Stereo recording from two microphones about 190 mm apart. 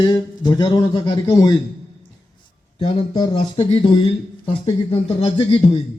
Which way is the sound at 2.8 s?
25° left (ahead or behind).